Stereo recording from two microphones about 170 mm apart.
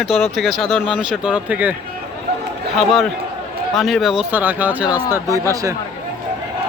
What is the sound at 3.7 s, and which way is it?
Speech, centre (ahead or behind).